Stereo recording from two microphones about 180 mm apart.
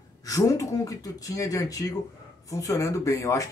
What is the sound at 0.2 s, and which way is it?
Speech, 20° left (ahead or behind).